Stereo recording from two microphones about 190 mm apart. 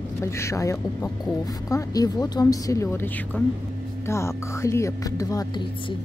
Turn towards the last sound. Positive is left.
turn(degrees=20)  # may be behind; listen again after turning